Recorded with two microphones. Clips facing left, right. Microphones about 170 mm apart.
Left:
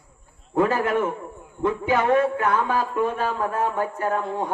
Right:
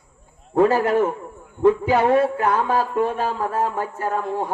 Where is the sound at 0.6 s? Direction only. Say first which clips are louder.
Right 5 dB; 35° right (ahead or behind).